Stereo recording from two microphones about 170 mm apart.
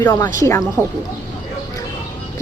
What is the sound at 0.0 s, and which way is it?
Speech, 20° left (ahead or behind).